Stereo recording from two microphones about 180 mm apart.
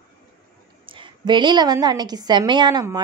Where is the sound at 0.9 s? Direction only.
25° right (ahead or behind).